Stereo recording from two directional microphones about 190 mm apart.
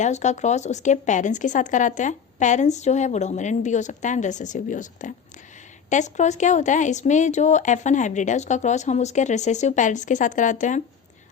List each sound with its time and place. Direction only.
0.0 s speech: 40° left (ahead or behind)